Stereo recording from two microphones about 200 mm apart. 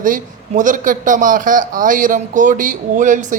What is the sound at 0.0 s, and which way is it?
Speech, 40° right (ahead or behind).